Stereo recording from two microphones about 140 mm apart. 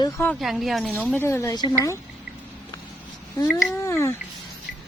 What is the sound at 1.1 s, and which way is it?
Speech, 15° left (ahead or behind).